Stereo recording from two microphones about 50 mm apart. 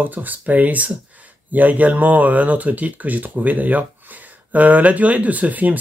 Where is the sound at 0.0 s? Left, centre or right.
Right.